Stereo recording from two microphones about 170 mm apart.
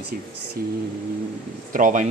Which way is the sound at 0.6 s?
65° right (ahead or behind).